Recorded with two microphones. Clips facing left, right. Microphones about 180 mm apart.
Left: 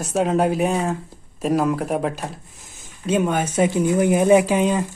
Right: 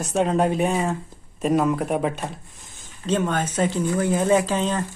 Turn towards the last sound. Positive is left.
turn(degrees=10)  # may be behind; listen again after turning